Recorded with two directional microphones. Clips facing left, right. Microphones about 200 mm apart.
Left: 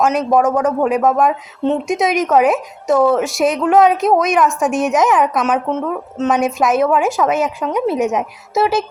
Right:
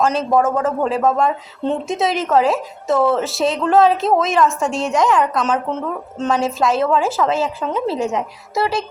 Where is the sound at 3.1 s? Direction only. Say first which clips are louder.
Left 3 dB; 15° left (ahead or behind).